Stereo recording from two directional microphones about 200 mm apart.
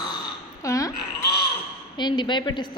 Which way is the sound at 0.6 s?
15° left (ahead or behind).